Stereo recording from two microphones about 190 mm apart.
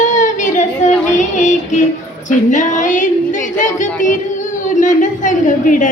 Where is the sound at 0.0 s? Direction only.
40° left (ahead or behind).